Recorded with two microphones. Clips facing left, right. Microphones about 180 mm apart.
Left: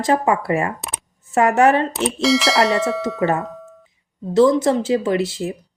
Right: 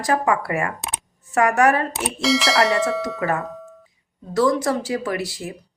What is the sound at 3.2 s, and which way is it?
Speech, 25° left (ahead or behind).